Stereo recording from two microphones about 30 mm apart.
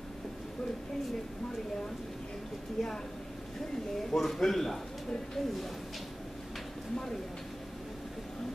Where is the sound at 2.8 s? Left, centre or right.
Centre.